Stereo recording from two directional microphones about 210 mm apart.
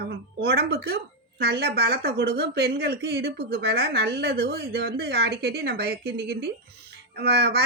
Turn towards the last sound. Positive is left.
turn(degrees=-50)  # may be behind; listen again after turning